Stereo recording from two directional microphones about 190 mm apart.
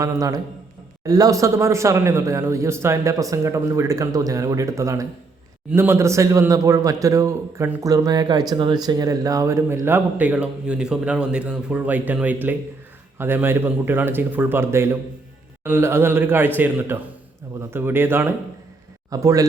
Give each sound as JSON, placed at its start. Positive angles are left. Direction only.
{"t": 0.0, "sound": "a man's voice", "side_deg": -15}